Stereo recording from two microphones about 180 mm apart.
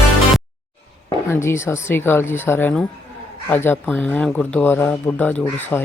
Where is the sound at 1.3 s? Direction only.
15° left (ahead or behind).